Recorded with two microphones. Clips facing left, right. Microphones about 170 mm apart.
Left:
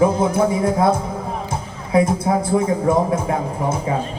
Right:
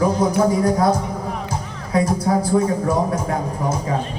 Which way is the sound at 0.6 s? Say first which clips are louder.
Even; 25° left (ahead or behind).